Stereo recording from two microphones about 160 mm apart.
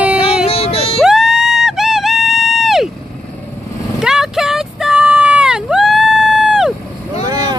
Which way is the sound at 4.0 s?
5° right (ahead or behind).